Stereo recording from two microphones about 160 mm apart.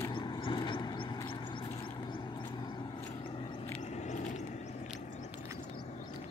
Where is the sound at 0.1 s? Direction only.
30° left (ahead or behind).